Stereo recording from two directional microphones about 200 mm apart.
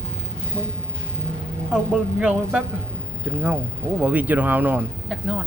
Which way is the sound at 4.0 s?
10° right (ahead or behind).